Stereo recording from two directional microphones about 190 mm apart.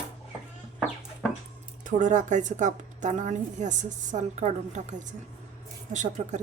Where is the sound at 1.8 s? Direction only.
40° right (ahead or behind).